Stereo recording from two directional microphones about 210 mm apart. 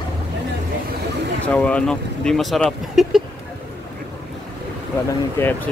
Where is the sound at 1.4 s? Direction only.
5° left (ahead or behind).